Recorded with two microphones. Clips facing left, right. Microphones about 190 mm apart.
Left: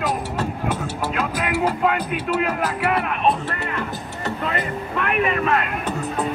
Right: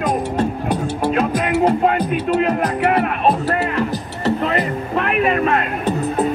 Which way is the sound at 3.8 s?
35° right (ahead or behind).